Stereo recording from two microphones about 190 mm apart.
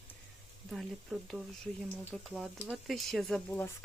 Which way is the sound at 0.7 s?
Centre (ahead or behind).